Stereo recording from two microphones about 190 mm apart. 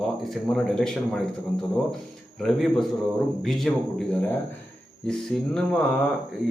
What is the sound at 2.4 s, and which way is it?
Speech, centre (ahead or behind).